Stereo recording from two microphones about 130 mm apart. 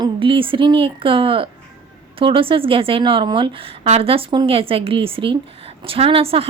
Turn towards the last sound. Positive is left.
turn(degrees=-45)  # may be behind; listen again after turning